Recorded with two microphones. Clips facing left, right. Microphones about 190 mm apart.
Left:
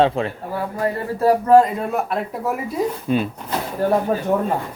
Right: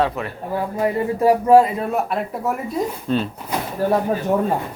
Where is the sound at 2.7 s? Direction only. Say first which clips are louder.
Left 3 dB; 10° left (ahead or behind).